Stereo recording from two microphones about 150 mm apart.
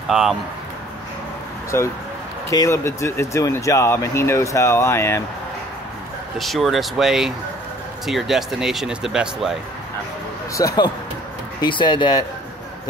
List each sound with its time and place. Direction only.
0.1 s speech: centre (ahead or behind)
1.7 s speech: 15° left (ahead or behind)
6.3 s speech: centre (ahead or behind)
10.5 s speech: 25° left (ahead or behind)